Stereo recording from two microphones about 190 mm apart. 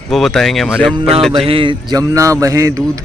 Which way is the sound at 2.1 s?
15° right (ahead or behind).